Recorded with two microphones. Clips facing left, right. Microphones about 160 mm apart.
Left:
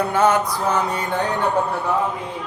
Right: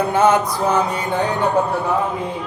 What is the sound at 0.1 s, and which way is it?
Mantra, 20° right (ahead or behind).